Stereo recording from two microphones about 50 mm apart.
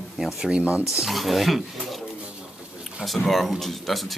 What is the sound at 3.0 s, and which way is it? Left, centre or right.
Speech, centre.